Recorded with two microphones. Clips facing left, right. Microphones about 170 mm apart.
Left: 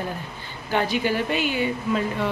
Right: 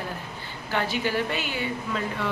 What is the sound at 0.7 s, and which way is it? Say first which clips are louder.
A woman's voice: left 3 dB; 15° left (ahead or behind).